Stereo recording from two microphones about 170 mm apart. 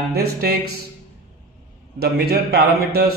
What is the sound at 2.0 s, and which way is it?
A man's voice, 70° right (ahead or behind).